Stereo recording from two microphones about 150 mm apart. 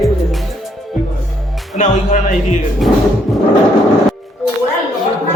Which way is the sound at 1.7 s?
55° left (ahead or behind).